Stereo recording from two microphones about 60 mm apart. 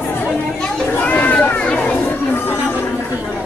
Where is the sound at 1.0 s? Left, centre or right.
Left.